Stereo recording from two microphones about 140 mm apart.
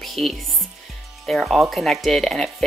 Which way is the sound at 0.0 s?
Centre (ahead or behind).